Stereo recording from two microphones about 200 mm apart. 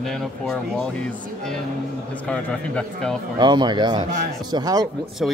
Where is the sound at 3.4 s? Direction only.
20° right (ahead or behind).